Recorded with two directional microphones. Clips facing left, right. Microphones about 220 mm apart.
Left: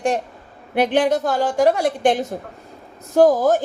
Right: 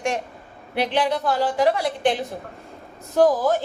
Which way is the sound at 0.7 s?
50° left (ahead or behind).